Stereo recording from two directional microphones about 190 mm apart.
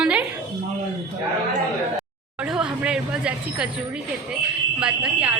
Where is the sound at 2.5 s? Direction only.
5° right (ahead or behind).